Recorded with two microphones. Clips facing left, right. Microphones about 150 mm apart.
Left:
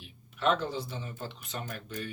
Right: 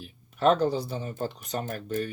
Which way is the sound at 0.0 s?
40° right (ahead or behind).